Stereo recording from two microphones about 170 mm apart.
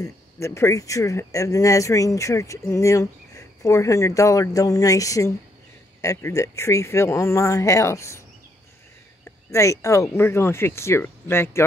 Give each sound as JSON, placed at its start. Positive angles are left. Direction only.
{"t": 0.0, "sound": "speech", "side_deg": 15}
{"t": 9.5, "sound": "speech", "side_deg": 15}